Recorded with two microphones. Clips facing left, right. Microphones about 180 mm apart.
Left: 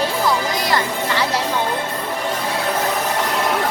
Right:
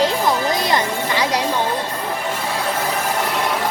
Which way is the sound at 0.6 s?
20° right (ahead or behind).